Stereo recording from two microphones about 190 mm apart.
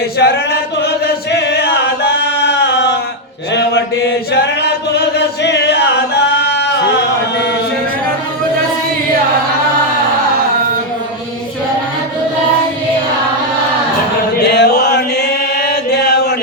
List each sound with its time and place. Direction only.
0.2 s chant: 60° left (ahead or behind)
14.3 s music: 60° left (ahead or behind)
15.6 s chant: 60° left (ahead or behind)